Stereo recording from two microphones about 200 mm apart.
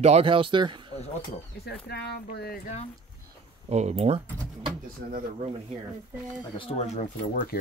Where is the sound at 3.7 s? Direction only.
35° right (ahead or behind).